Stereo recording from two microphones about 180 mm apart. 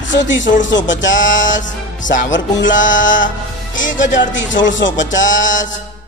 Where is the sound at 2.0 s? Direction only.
45° left (ahead or behind).